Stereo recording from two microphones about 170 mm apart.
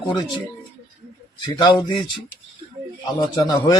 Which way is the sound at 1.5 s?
25° left (ahead or behind).